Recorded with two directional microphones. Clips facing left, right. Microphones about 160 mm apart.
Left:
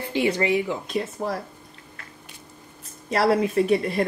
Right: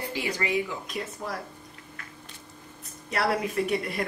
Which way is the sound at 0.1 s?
25° left (ahead or behind).